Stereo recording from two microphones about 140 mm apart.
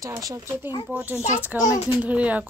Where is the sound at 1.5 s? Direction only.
25° left (ahead or behind).